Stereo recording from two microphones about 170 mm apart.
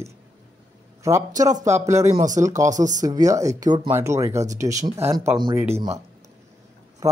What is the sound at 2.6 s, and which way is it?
Speech, 45° right (ahead or behind).